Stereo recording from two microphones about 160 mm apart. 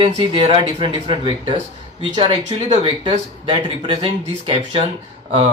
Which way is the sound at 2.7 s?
35° right (ahead or behind).